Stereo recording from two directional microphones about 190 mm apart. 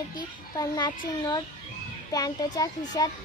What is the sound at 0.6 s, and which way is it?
A child's voice, 20° left (ahead or behind).